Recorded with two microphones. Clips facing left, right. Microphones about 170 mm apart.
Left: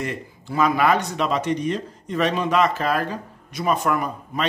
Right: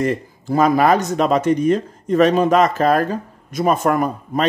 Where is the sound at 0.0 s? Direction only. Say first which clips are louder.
Right 9 dB; 40° right (ahead or behind).